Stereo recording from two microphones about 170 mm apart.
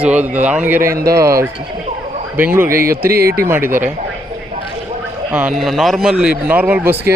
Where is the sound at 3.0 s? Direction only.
65° right (ahead or behind).